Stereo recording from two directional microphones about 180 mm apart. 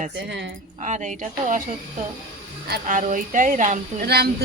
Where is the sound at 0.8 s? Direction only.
40° right (ahead or behind).